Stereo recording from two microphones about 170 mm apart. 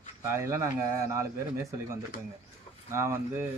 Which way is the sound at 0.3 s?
15° right (ahead or behind).